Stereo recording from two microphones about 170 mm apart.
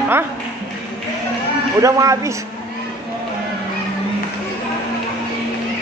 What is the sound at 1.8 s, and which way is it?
Speech, 20° right (ahead or behind).